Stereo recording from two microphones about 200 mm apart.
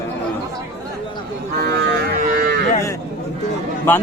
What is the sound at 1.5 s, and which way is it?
Cattle, 55° right (ahead or behind).